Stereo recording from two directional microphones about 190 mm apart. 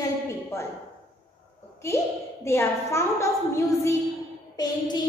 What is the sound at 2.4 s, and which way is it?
A woman's voice, 15° left (ahead or behind).